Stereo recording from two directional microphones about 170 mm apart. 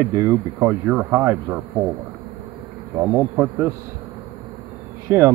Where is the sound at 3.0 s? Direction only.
15° right (ahead or behind).